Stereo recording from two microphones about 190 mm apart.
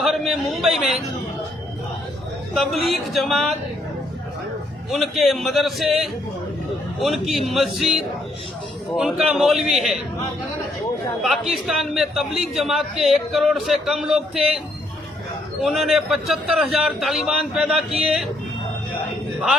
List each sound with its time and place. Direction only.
0.0 s a sound: centre (ahead or behind)
2.6 s a man's voice: centre (ahead or behind)
4.9 s a man's voice: centre (ahead or behind)
11.2 s a man's voice: centre (ahead or behind)
15.6 s a man's voice: centre (ahead or behind)